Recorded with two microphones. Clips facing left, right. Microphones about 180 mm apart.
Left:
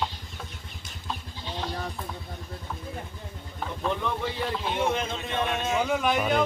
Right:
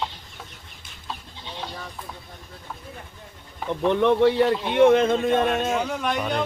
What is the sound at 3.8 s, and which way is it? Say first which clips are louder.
Speech: right 12 dB; 75° right (ahead or behind).